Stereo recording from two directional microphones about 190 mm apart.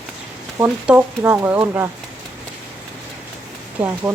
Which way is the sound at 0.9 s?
10° right (ahead or behind).